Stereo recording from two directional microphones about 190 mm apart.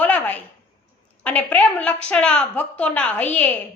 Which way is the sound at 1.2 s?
5° left (ahead or behind).